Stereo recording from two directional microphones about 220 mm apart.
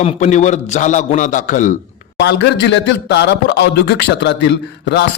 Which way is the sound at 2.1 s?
50° left (ahead or behind).